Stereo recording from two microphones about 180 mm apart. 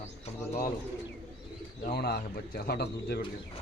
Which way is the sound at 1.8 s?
60° left (ahead or behind).